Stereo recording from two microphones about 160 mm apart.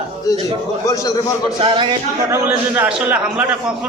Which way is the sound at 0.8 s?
20° left (ahead or behind).